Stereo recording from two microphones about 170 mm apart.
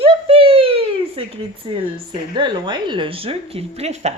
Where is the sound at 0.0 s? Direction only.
35° right (ahead or behind).